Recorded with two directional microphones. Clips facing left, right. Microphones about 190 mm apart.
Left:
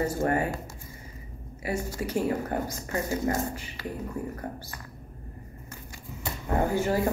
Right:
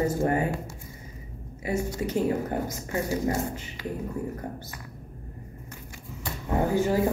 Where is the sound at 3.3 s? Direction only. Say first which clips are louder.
Even; 10° right (ahead or behind).